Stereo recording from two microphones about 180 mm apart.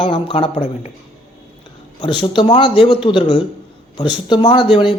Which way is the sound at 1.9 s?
25° left (ahead or behind).